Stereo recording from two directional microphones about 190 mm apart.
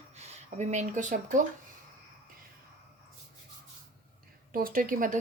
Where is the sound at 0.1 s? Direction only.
35° right (ahead or behind).